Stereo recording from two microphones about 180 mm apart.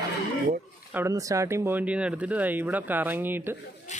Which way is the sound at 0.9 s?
15° right (ahead or behind).